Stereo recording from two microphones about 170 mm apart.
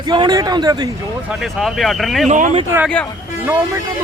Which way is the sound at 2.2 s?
45° right (ahead or behind).